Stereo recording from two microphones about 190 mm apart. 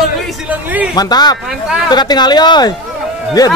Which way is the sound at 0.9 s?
20° left (ahead or behind).